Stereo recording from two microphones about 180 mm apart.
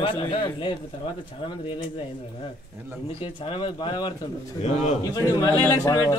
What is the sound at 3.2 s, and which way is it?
Speech, 30° left (ahead or behind).